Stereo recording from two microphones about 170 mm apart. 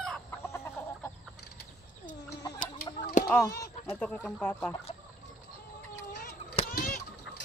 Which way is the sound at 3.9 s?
5° left (ahead or behind).